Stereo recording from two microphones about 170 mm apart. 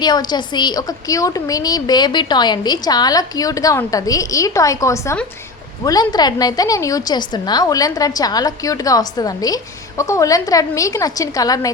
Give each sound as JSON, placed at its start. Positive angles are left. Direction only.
{"t": 0.0, "sound": "a woman's voice", "side_deg": 25}